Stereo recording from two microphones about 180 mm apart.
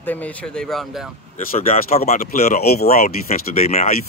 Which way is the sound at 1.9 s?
40° left (ahead or behind).